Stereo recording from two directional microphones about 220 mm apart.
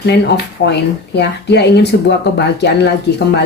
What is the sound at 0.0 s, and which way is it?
Speech, 50° left (ahead or behind).